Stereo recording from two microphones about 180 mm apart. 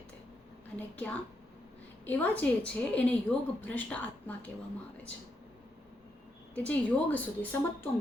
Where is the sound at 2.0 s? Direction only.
10° left (ahead or behind).